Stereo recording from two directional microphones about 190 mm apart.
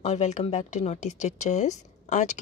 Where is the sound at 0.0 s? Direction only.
35° left (ahead or behind).